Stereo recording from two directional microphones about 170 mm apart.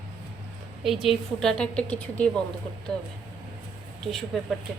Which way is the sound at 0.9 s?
Centre (ahead or behind).